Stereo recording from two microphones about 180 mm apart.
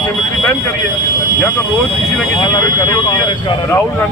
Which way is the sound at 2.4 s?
25° left (ahead or behind).